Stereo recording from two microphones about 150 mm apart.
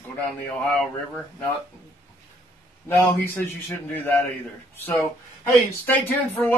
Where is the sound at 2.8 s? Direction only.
15° left (ahead or behind).